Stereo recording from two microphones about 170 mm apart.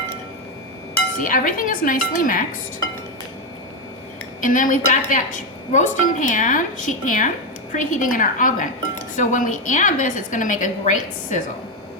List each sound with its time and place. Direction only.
1.2 s a woman's voice: 55° left (ahead or behind)
4.4 s a woman's voice: 50° left (ahead or behind)